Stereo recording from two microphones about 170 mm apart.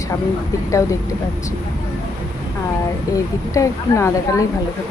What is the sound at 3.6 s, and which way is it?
Speech, 20° left (ahead or behind).